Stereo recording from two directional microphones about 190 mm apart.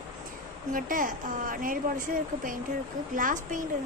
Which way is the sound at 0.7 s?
45° right (ahead or behind).